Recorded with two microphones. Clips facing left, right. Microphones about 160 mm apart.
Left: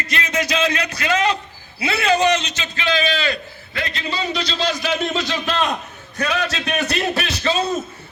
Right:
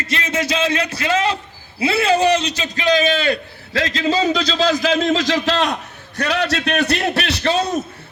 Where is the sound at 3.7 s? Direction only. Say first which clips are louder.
Right 8 dB; 90° right.